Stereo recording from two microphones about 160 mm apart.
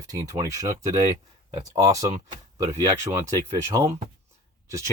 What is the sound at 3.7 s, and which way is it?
Speech, 25° right (ahead or behind).